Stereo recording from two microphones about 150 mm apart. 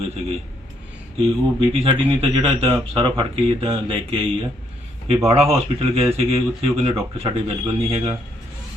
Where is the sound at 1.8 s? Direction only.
40° right (ahead or behind).